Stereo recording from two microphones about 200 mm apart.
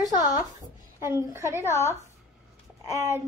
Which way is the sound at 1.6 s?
15° left (ahead or behind).